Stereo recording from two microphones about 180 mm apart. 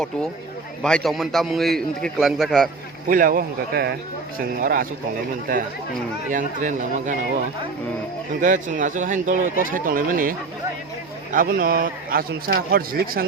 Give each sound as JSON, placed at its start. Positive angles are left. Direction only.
{"t": 0.8, "sound": "a man's voice", "side_deg": 5}
{"t": 3.1, "sound": "speech", "side_deg": -50}
{"t": 8.4, "sound": "speech", "side_deg": -45}
{"t": 11.3, "sound": "speech", "side_deg": -50}